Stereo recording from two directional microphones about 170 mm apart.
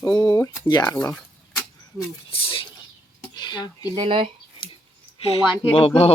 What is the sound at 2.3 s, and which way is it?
Speech, 30° left (ahead or behind).